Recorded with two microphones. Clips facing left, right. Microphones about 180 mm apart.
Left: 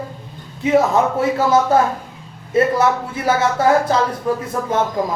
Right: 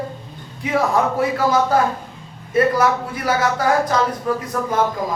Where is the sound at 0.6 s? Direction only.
25° left (ahead or behind).